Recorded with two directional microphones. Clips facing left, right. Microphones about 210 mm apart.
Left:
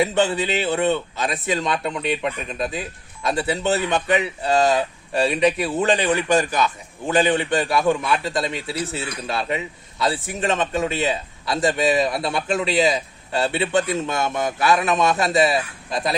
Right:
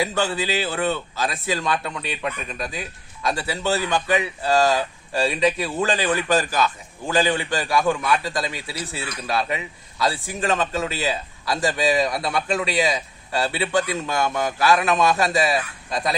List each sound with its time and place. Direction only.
0.0 s a man's voice: 20° left (ahead or behind)